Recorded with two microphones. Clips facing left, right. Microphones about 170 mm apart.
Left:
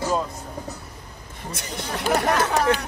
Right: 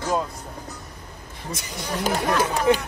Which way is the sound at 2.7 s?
15° right (ahead or behind).